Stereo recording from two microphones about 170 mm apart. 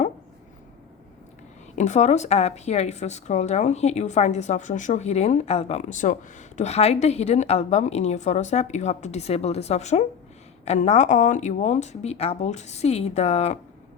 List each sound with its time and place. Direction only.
1.7 s a woman's voice: 40° left (ahead or behind)